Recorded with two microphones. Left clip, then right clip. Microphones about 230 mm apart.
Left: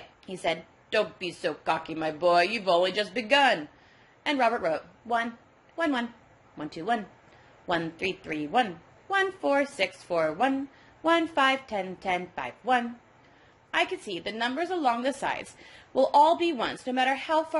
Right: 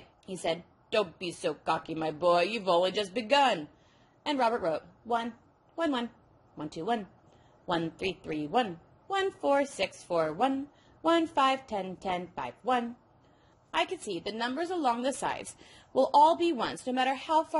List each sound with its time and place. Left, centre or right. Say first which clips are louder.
0.3 s a woman's voice: left 3 dB; right
8.0 s a woman's voice: left 3 dB; right